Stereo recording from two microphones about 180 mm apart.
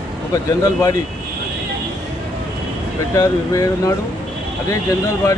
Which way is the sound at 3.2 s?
20° left (ahead or behind).